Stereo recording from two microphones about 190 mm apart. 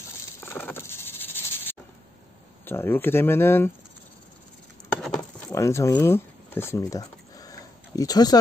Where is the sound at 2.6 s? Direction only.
10° left (ahead or behind).